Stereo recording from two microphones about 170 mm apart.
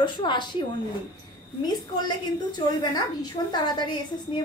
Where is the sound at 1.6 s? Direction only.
25° left (ahead or behind).